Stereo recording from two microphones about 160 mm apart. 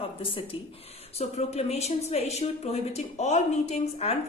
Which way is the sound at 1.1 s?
40° left (ahead or behind).